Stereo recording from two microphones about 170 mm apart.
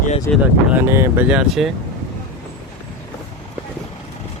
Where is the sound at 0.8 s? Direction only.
15° right (ahead or behind).